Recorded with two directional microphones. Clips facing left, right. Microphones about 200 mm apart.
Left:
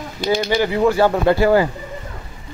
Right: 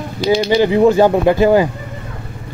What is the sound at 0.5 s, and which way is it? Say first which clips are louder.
Speech: right 6 dB; 20° right (ahead or behind).